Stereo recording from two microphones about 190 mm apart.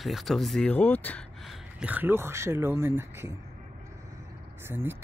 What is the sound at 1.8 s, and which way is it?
Speech, 10° right (ahead or behind).